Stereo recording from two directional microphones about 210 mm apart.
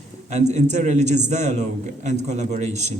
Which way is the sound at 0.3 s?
35° right (ahead or behind).